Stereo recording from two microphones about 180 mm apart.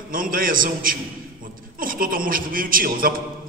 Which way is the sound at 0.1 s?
50° right (ahead or behind).